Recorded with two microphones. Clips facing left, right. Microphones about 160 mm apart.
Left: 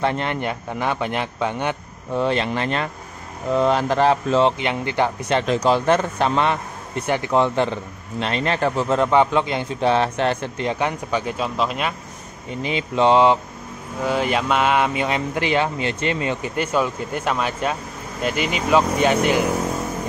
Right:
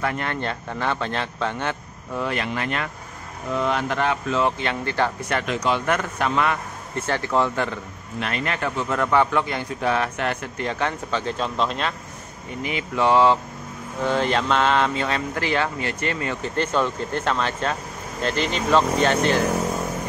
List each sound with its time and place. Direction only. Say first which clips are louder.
0.0 s speech: left 4 dB; 25° left (ahead or behind)
2.1 s a man's voice: left 5 dB; 25° left (ahead or behind)
4.5 s speech: left 3 dB; 15° left (ahead or behind)
5.4 s a man's voice: left 6 dB; 35° left (ahead or behind)
10.7 s speech: left 2 dB; 15° left (ahead or behind)
12.6 s a man's voice: left 4 dB; 25° left (ahead or behind)
14.0 s speech: left 1 dB; 10° left (ahead or behind)